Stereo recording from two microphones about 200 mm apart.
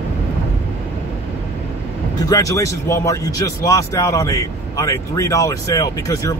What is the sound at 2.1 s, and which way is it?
Speech, 15° left (ahead or behind).